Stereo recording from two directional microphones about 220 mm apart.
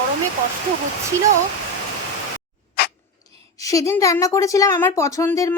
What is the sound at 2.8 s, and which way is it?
Dog, 45° left (ahead or behind).